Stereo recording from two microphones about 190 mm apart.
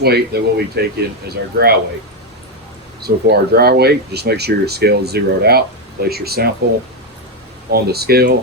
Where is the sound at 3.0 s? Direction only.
55° right (ahead or behind).